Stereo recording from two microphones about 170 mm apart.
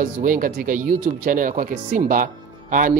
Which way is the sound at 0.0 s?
55° right (ahead or behind).